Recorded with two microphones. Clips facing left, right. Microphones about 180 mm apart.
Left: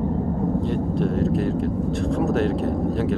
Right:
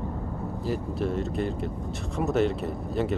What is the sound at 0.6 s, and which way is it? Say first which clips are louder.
Speech: left 6 dB; 5° right (ahead or behind).